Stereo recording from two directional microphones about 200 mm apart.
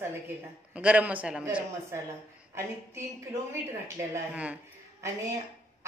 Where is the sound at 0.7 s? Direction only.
5° right (ahead or behind).